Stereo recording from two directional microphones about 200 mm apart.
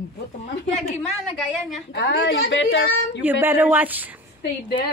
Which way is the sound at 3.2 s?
10° right (ahead or behind).